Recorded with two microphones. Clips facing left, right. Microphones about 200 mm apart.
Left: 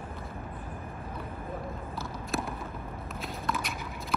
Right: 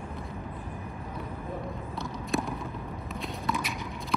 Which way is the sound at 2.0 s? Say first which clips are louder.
Right 4 dB; centre (ahead or behind).